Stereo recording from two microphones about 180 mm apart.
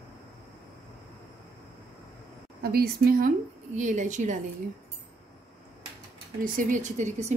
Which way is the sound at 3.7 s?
45° right (ahead or behind).